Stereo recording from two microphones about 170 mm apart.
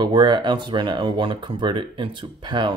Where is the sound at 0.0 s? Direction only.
25° right (ahead or behind).